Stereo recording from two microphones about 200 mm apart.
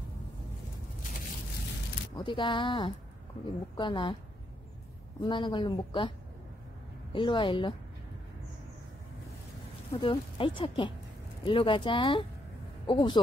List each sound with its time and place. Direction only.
2.1 s speech: 25° left (ahead or behind)
5.2 s speech: 25° left (ahead or behind)
9.9 s speech: 25° left (ahead or behind)